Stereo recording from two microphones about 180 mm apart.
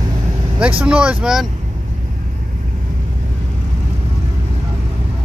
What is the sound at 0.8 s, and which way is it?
Speech, 5° right (ahead or behind).